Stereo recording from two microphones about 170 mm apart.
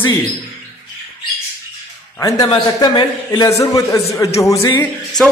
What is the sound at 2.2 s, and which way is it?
A man's voice, 20° left (ahead or behind).